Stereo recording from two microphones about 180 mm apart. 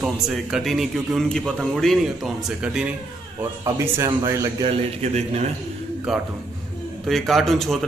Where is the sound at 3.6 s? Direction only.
15° right (ahead or behind).